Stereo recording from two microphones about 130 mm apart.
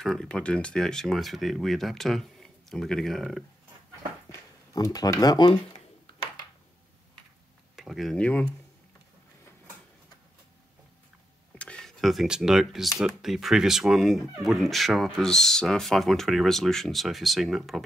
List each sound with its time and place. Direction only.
0.0 s speech: 5° left (ahead or behind)
4.3 s speech: 25° left (ahead or behind)
7.7 s speech: centre (ahead or behind)
11.5 s speech: 10° left (ahead or behind)